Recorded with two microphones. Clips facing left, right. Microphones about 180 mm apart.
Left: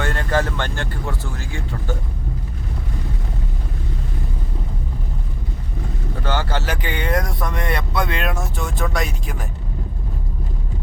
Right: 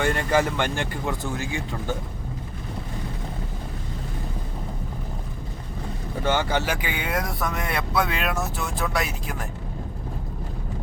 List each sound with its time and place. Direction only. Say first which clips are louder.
0.0 s speech: even; 10° right (ahead or behind)
6.2 s speech: right 1 dB; 15° right (ahead or behind); by 9.5 s centre (ahead or behind)